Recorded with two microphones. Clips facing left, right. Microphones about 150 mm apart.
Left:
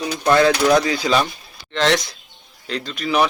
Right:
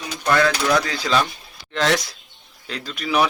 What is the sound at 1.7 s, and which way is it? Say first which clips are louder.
A man's voice: left 2 dB; 5° right (ahead or behind).